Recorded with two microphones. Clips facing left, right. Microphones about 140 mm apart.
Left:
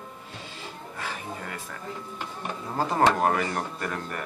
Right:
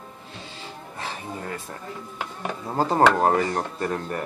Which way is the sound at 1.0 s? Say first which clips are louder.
Right 2 dB; 30° right (ahead or behind).